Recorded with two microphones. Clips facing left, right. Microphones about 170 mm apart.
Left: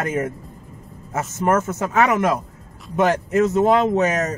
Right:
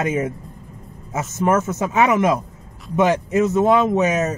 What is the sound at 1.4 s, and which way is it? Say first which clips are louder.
Speech: right 1 dB; 10° right (ahead or behind).